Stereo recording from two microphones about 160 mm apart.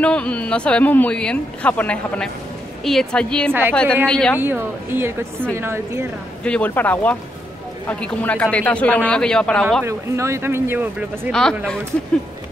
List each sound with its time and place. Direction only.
0.0 s a woman's voice: 5° left (ahead or behind)
4.4 s a woman's voice: 15° right (ahead or behind)
6.4 s speech: 10° left (ahead or behind)
9.8 s a woman's voice: 20° right (ahead or behind)